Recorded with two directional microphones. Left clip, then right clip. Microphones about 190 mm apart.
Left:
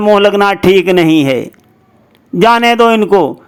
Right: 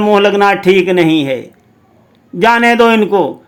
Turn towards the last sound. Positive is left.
turn(degrees=30)  # may be behind; listen again after turning